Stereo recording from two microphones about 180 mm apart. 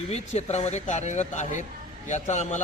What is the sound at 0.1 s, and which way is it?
A man's voice, 40° left (ahead or behind).